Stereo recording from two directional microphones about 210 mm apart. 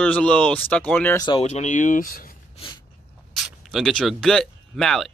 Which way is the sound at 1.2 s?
25° left (ahead or behind).